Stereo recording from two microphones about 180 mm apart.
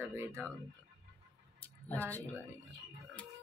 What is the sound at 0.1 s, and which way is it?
Speech, 15° right (ahead or behind).